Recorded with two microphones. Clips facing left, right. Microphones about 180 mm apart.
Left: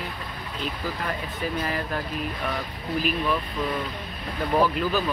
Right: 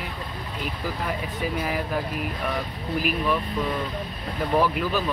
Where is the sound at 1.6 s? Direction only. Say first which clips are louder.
Right 1 dB; 10° right (ahead or behind).